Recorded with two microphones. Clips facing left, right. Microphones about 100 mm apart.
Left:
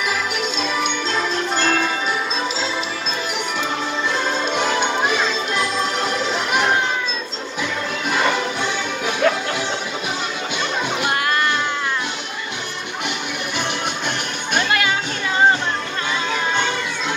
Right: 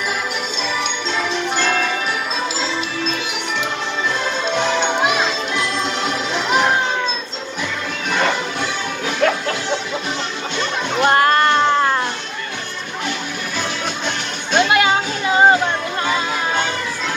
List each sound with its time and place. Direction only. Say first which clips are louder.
9.2 s music: right 1 dB; 5° left (ahead or behind)
11.1 s music: right 9 dB; 45° right (ahead or behind)
14.5 s music: right 5 dB; 20° right (ahead or behind)